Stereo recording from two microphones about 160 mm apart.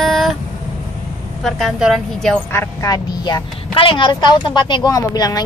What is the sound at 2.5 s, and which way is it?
Speech, 15° left (ahead or behind).